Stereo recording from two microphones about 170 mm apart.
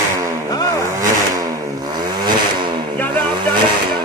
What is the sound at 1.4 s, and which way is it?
Motorcycle, 20° right (ahead or behind).